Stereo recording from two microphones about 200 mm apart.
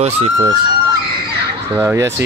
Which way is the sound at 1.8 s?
15° right (ahead or behind).